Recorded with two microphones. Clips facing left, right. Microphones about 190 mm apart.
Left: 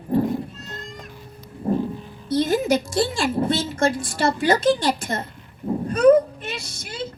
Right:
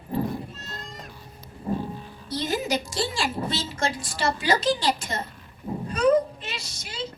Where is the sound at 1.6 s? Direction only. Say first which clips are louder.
Left 6 dB; 50° left (ahead or behind).